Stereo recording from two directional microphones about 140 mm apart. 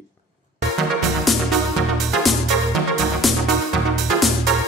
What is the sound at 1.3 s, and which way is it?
Music, centre (ahead or behind).